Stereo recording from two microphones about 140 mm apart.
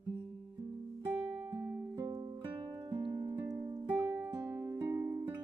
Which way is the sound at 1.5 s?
20° right (ahead or behind).